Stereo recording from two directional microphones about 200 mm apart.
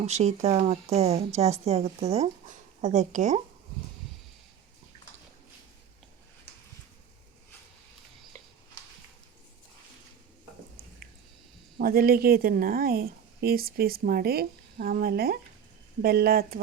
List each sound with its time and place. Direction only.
0.0 s speech: 35° right (ahead or behind)
11.8 s speech: 50° right (ahead or behind)